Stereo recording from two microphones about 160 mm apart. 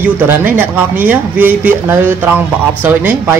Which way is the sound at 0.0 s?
10° right (ahead or behind).